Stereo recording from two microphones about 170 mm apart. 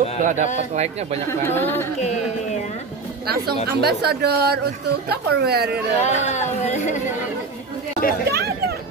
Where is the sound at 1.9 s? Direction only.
40° left (ahead or behind).